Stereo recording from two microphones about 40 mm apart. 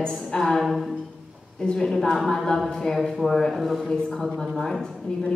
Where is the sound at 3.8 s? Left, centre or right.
Centre.